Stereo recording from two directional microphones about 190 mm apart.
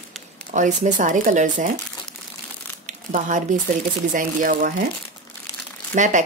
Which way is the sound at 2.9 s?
45° right (ahead or behind).